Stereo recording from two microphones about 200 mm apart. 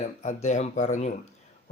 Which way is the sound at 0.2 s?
35° left (ahead or behind).